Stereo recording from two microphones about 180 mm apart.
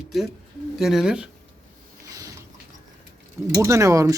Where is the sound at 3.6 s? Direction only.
15° right (ahead or behind).